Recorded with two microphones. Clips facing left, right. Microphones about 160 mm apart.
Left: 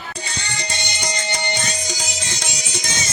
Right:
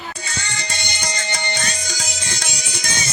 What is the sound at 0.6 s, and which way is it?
Music, 20° left (ahead or behind).